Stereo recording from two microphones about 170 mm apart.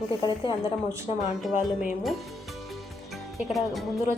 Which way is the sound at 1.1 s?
40° left (ahead or behind).